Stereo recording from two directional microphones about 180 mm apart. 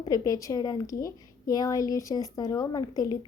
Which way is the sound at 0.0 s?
20° left (ahead or behind).